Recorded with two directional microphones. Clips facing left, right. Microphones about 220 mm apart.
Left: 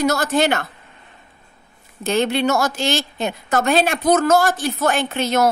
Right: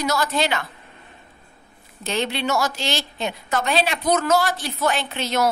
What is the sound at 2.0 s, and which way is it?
A woman's voice, 50° left (ahead or behind).